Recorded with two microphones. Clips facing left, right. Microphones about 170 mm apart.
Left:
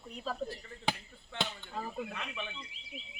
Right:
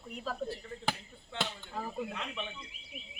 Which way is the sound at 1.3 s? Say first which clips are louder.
Even; 5° right (ahead or behind).